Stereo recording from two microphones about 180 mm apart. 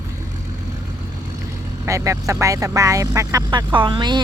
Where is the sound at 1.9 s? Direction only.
15° right (ahead or behind).